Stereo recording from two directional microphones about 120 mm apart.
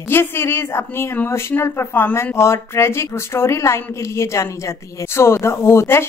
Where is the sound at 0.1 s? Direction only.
20° left (ahead or behind).